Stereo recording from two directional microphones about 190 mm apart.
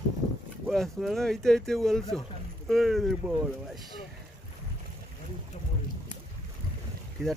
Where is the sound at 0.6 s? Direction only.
Centre (ahead or behind).